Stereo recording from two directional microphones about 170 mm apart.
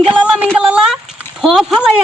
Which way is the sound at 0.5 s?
5° right (ahead or behind).